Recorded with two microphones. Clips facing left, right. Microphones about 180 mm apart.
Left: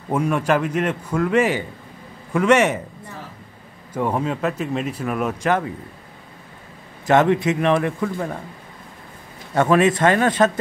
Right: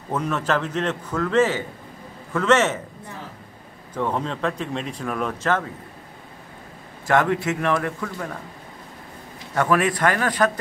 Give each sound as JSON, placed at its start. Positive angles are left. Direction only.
{"t": 0.1, "sound": "speech", "side_deg": 10}
{"t": 3.9, "sound": "speech", "side_deg": 10}
{"t": 7.1, "sound": "speech", "side_deg": 20}
{"t": 9.6, "sound": "speech", "side_deg": 25}